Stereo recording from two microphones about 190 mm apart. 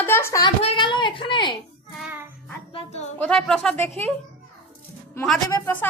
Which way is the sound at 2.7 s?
30° left (ahead or behind).